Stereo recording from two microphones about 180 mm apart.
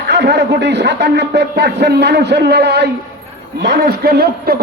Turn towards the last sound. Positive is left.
turn(degrees=-60)  # may be behind; listen again after turning